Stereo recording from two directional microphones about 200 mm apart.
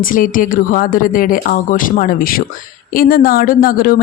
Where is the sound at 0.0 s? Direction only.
45° left (ahead or behind).